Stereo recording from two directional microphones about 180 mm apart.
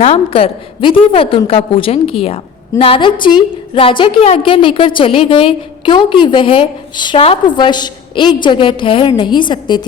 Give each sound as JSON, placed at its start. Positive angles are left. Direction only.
{"t": 0.0, "sound": "a woman's voice", "side_deg": 35}